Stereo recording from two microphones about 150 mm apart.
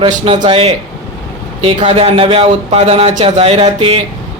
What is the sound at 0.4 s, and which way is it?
A man's voice, 35° right (ahead or behind).